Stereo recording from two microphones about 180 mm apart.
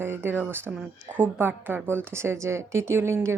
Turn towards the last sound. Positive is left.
turn(degrees=-15)  # may be behind; listen again after turning